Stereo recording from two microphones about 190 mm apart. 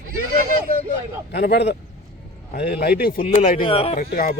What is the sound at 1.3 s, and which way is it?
A man's voice, 60° left (ahead or behind).